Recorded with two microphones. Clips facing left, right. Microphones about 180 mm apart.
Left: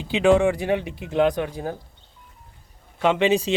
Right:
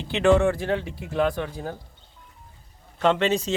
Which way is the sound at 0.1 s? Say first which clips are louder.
Left 2 dB; 15° left (ahead or behind).